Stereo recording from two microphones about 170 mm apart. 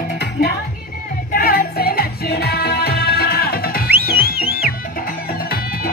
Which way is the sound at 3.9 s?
65° right (ahead or behind).